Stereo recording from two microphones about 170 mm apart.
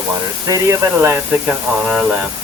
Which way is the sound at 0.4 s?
20° right (ahead or behind).